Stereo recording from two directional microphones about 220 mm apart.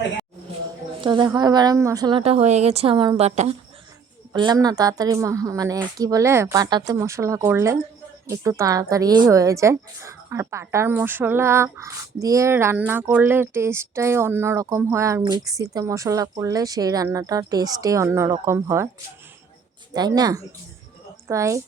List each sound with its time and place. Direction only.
1.0 s a woman's voice: 20° right (ahead or behind)
4.3 s a woman's voice: 15° right (ahead or behind)
19.9 s a woman's voice: 20° right (ahead or behind)